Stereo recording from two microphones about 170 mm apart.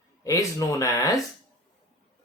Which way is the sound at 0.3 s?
20° left (ahead or behind).